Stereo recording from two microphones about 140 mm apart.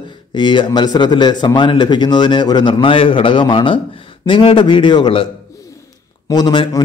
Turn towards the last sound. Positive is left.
turn(degrees=30)  # may be behind; listen again after turning